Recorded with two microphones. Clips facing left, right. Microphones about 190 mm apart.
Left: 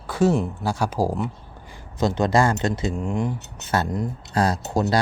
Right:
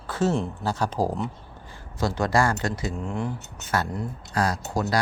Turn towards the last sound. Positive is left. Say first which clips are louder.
# left 4 dB
turn(degrees=25)  # may be behind; listen again after turning